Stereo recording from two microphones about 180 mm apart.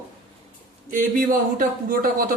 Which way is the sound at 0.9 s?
50° right (ahead or behind).